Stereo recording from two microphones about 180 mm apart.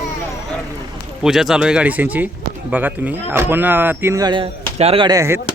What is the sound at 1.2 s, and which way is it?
A man's voice, centre (ahead or behind).